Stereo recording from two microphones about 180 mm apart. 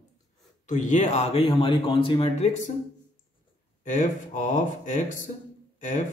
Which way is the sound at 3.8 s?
45° left (ahead or behind).